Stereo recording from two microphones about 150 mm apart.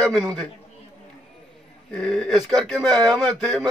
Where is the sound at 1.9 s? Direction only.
5° left (ahead or behind).